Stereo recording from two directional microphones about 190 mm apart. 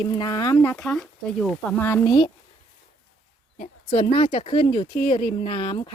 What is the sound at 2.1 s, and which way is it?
Speech, 25° left (ahead or behind).